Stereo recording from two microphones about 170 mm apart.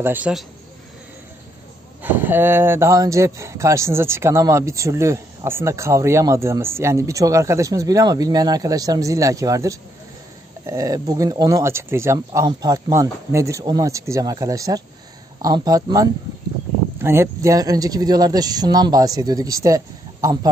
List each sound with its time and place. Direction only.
0.0 s speech: 10° right (ahead or behind)
2.0 s speech: 10° right (ahead or behind)